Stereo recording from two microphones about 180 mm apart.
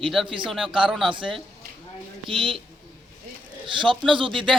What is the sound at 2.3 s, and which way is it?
Speech, 30° right (ahead or behind).